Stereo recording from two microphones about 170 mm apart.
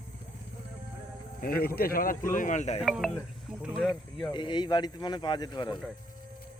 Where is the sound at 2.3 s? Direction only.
45° left (ahead or behind).